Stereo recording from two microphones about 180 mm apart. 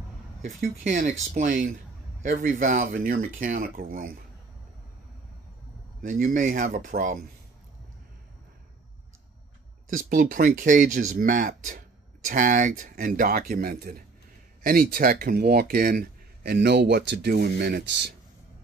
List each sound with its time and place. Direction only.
0.6 s speech: 45° right (ahead or behind)
6.0 s speech: 45° right (ahead or behind)
9.8 s speech: 45° right (ahead or behind); by 18.1 s 65° right (ahead or behind)